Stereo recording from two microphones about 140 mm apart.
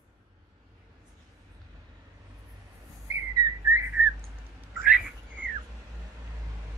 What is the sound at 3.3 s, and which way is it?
Whistling, 20° right (ahead or behind).